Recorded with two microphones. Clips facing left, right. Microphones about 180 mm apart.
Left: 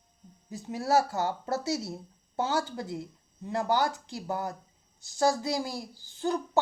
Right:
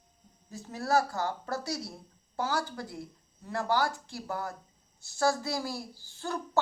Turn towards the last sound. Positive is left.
turn(degrees=20)  # may be behind; listen again after turning